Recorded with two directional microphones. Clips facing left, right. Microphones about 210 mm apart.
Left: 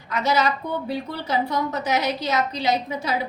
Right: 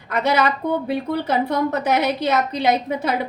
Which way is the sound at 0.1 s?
55° right (ahead or behind).